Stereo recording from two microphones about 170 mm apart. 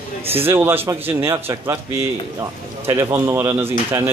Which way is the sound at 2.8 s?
15° right (ahead or behind).